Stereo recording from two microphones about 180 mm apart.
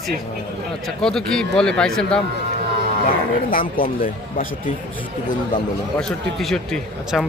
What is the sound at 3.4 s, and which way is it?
Speech, 50° left (ahead or behind).